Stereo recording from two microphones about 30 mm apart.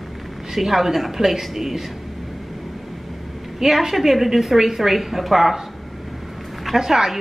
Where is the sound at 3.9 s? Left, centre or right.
Centre.